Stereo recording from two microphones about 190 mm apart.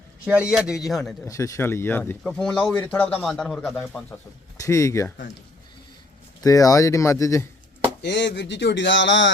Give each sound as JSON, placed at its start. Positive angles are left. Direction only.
{"t": 0.3, "sound": "a man's voice", "side_deg": -5}
{"t": 1.2, "sound": "speech", "side_deg": 15}
{"t": 4.5, "sound": "speech", "side_deg": 15}
{"t": 6.4, "sound": "speech", "side_deg": 20}
{"t": 8.0, "sound": "speech", "side_deg": 65}